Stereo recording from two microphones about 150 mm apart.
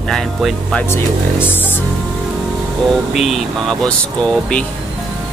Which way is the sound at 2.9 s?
Centre (ahead or behind).